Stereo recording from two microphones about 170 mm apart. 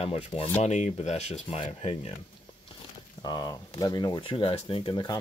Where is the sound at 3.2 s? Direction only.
25° left (ahead or behind).